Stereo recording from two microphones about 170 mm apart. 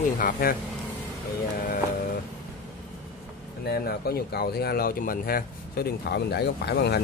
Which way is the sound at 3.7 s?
65° left (ahead or behind).